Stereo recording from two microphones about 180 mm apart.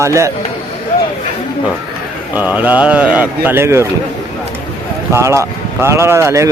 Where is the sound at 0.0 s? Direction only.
15° right (ahead or behind).